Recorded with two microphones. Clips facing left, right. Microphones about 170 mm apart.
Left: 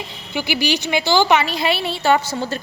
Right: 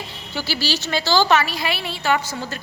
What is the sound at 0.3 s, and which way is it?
A woman's voice, 15° left (ahead or behind).